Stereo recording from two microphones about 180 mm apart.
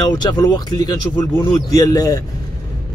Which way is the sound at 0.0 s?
20° left (ahead or behind).